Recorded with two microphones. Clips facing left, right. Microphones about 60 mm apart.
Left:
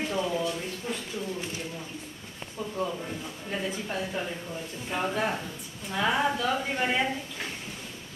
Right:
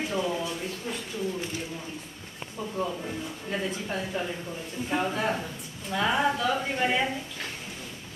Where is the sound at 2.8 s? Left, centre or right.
Centre.